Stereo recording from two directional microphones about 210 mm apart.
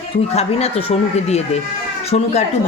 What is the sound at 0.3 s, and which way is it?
A woman's voice, 30° left (ahead or behind).